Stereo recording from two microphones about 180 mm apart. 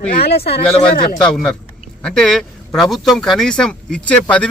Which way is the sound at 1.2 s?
5° left (ahead or behind).